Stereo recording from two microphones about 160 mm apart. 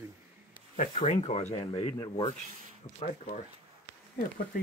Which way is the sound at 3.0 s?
45° left (ahead or behind).